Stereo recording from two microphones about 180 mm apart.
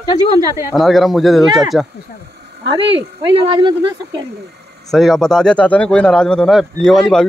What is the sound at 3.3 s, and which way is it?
Speech, 25° right (ahead or behind).